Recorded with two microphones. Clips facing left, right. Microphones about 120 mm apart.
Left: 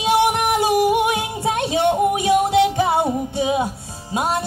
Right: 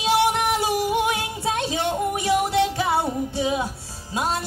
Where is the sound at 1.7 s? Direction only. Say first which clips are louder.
Left 7 dB; 20° left (ahead or behind).